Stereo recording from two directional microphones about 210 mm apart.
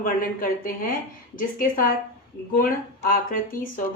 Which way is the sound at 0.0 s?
40° left (ahead or behind).